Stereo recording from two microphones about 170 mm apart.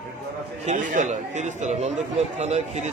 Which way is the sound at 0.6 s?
45° right (ahead or behind).